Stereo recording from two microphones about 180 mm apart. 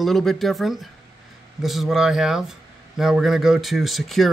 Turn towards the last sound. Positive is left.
turn(degrees=0)  # may be behind; listen again after turning